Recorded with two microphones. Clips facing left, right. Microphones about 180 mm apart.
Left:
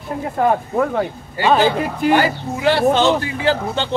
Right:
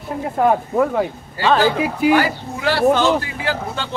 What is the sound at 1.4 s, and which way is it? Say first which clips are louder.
Speech: left 1 dB; 15° left (ahead or behind).